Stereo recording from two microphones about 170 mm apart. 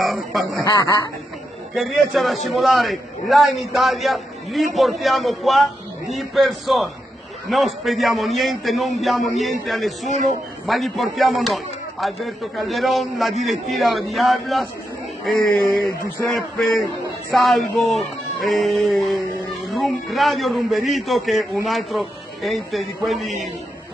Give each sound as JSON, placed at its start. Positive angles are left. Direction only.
{"t": 0.0, "sound": "a sound", "side_deg": 0}
{"t": 0.7, "sound": "speech", "side_deg": 25}
{"t": 1.8, "sound": "a man's voice", "side_deg": 0}